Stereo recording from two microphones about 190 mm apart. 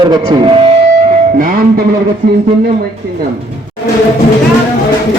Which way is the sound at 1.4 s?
50° right (ahead or behind).